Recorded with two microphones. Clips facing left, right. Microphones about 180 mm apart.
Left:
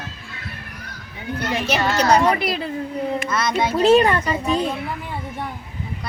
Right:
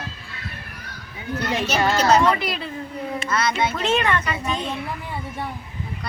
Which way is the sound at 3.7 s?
35° left (ahead or behind).